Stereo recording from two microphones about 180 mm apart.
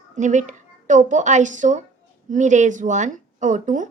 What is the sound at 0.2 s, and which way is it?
A child's voice, 45° right (ahead or behind).